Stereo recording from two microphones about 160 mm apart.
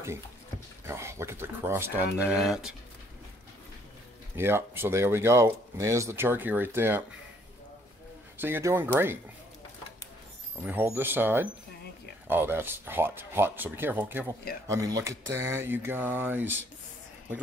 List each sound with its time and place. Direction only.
0.8 s speech: 15° right (ahead or behind)
2.1 s speech: 5° right (ahead or behind)
4.4 s speech: 15° right (ahead or behind)
8.4 s speech: 15° right (ahead or behind)
10.6 s speech: 10° right (ahead or behind)